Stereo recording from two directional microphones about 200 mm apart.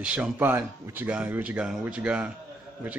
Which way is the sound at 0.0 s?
5° right (ahead or behind).